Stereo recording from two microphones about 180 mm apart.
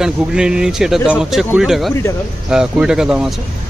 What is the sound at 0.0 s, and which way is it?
Speech, 5° right (ahead or behind).